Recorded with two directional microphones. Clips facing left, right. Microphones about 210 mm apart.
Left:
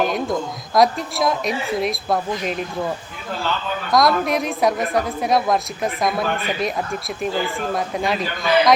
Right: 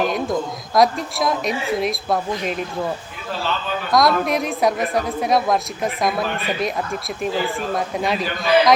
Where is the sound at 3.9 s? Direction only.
Centre (ahead or behind).